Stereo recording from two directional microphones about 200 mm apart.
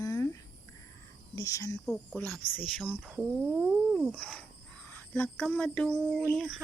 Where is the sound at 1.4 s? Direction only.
15° left (ahead or behind).